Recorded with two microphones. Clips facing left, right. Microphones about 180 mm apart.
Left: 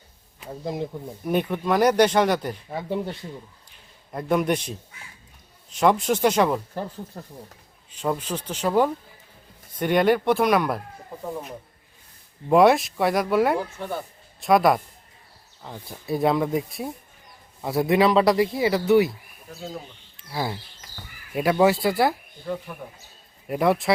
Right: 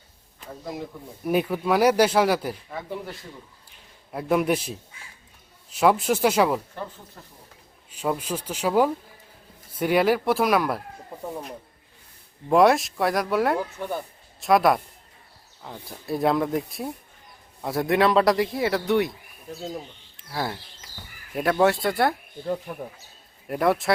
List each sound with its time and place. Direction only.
1.2 s speech: 5° right (ahead or behind)
2.6 s speech: 30° left (ahead or behind)
4.1 s speech: 5° right (ahead or behind)
7.1 s speech: 40° left (ahead or behind)
7.9 s speech: 5° right (ahead or behind)
12.5 s speech: centre (ahead or behind)
20.1 s speech: centre (ahead or behind)
23.5 s speech: centre (ahead or behind)